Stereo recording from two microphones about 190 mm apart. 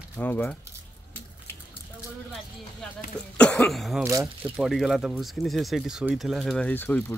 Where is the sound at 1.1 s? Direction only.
10° left (ahead or behind).